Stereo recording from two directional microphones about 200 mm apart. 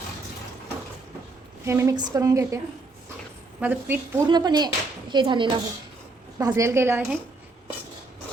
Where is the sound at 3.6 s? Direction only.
10° right (ahead or behind).